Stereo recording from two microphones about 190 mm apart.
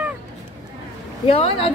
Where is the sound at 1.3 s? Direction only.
30° left (ahead or behind).